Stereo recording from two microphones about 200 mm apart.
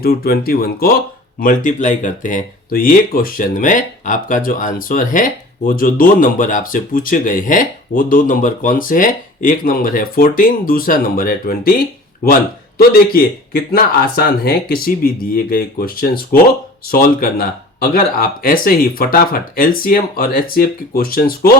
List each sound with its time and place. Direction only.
0.0 s speech: 50° left (ahead or behind)